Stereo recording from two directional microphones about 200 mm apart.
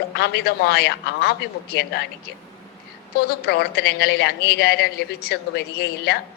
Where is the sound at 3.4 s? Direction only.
55° left (ahead or behind).